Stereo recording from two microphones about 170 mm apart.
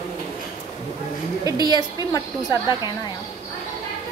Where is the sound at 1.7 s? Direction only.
20° left (ahead or behind).